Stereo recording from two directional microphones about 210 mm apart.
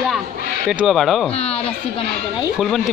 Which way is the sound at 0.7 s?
5° right (ahead or behind).